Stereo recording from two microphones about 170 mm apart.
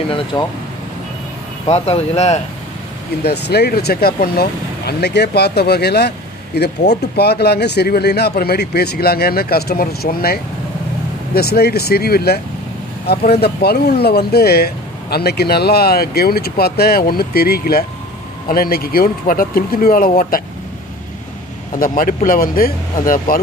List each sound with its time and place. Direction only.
0.3 s speech: 25° left (ahead or behind)
1.7 s speech: 40° left (ahead or behind)
3.3 s speech: 70° left (ahead or behind); by 20.4 s 55° left (ahead or behind)
21.7 s speech: 55° left (ahead or behind)